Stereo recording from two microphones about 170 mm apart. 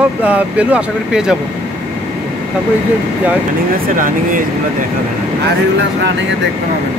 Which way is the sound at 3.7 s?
55° right (ahead or behind).